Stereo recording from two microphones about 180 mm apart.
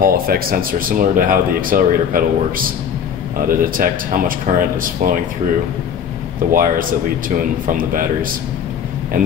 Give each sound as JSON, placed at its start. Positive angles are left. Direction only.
{"t": 0.0, "sound": "speech", "side_deg": -55}
{"t": 6.5, "sound": "speech", "side_deg": -50}